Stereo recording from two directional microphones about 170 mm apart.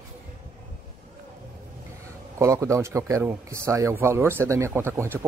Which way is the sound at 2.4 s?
15° right (ahead or behind).